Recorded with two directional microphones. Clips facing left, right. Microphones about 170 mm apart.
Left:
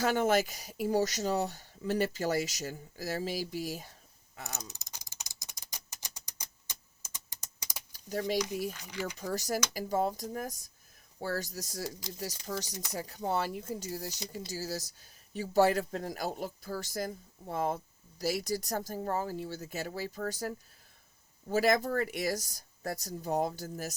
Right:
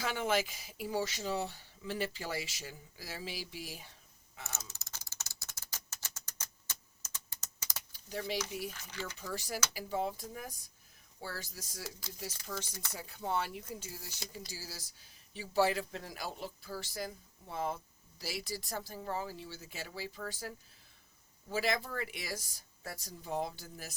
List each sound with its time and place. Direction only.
0.0 s speech: 45° left (ahead or behind)
4.7 s a sound: 15° left (ahead or behind)
7.9 s speech: 45° left (ahead or behind)
8.7 s speech: 15° left (ahead or behind)
9.1 s speech: 40° left (ahead or behind)
12.6 s speech: 15° left (ahead or behind)
12.9 s speech: 40° left (ahead or behind)
21.5 s speech: 45° left (ahead or behind)